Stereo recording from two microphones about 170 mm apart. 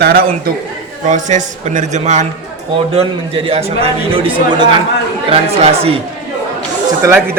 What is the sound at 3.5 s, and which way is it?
Speech, 35° right (ahead or behind).